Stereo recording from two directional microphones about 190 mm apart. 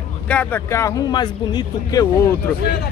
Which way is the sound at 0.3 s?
10° left (ahead or behind).